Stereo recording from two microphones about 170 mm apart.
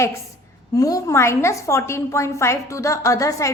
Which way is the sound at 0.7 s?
20° left (ahead or behind).